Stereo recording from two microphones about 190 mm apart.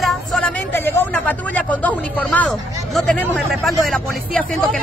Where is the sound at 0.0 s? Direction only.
Centre (ahead or behind).